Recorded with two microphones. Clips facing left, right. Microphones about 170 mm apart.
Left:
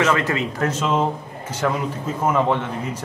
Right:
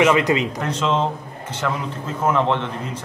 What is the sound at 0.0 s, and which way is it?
Speech, 15° right (ahead or behind).